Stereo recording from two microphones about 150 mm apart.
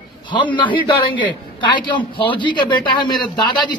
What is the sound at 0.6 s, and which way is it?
Speech, 35° left (ahead or behind).